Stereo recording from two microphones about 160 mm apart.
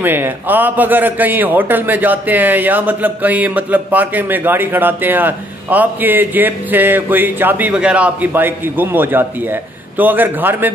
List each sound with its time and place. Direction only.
0.0 s a man's voice: 10° right (ahead or behind)